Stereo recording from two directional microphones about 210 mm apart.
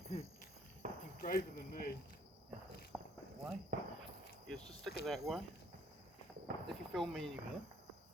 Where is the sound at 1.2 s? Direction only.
45° left (ahead or behind).